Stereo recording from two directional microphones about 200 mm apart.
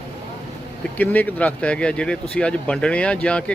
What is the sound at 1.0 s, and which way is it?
Speech, 10° left (ahead or behind).